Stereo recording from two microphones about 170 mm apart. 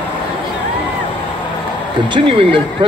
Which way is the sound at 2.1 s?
30° right (ahead or behind).